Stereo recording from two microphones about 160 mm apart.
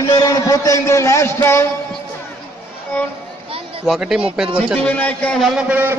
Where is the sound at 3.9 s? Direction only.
5° right (ahead or behind).